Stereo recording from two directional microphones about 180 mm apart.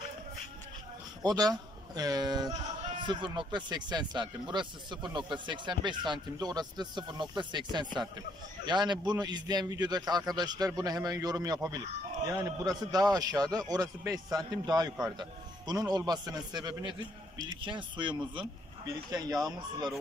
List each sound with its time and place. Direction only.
1.2 s speech: 20° right (ahead or behind)